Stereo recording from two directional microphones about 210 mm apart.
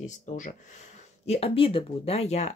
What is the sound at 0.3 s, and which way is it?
Speech, 35° left (ahead or behind).